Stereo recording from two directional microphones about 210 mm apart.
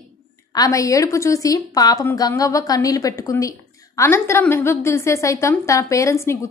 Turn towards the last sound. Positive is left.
turn(degrees=15)  # may be behind; listen again after turning